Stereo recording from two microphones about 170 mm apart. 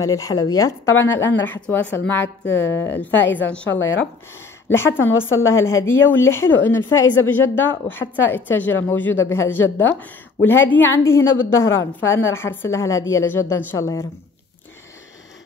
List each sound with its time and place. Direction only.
0.0 s speech: 20° left (ahead or behind)
1.1 s speech: 90° left
1.4 s a woman's voice: 10° left (ahead or behind)